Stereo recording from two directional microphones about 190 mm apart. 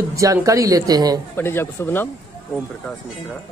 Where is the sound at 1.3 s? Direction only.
10° left (ahead or behind).